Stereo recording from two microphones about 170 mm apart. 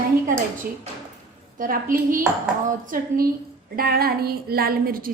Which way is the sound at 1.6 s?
55° right (ahead or behind).